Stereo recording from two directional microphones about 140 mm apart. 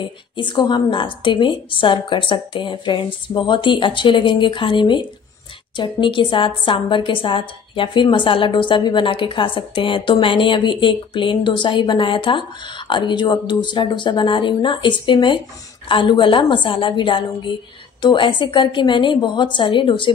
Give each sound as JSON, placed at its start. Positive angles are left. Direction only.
{"t": 0.4, "sound": "a woman's voice", "side_deg": 35}